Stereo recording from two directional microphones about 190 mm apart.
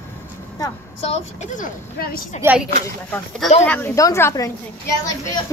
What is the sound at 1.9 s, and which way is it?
Speech, 50° left (ahead or behind).